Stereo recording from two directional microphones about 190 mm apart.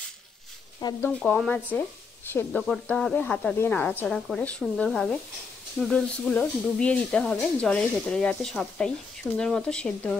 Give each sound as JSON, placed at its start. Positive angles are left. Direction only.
{"t": 0.7, "sound": "speech", "side_deg": 20}
{"t": 1.2, "sound": "speech", "side_deg": 5}